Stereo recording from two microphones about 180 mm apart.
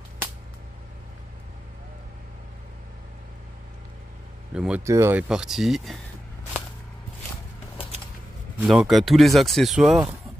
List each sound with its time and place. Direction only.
4.6 s speech: 5° right (ahead or behind)
5.3 s speech: 5° right (ahead or behind)
8.6 s speech: centre (ahead or behind)